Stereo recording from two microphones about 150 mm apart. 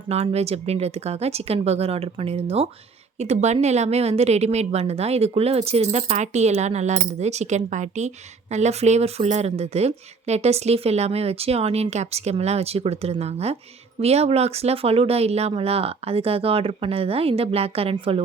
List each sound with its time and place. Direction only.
0.1 s a woman's voice: 45° right (ahead or behind)